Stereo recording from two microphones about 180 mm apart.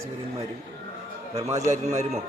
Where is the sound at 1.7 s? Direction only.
40° right (ahead or behind).